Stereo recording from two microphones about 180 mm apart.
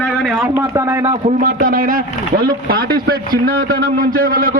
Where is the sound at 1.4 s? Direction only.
50° right (ahead or behind).